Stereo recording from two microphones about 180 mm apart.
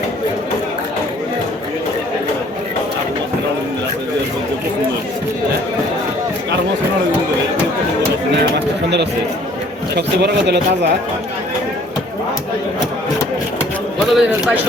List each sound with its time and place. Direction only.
8.5 s a sound: 70° right (ahead or behind)
9.9 s a man's voice: 65° right (ahead or behind)
14.1 s a man's voice: centre (ahead or behind)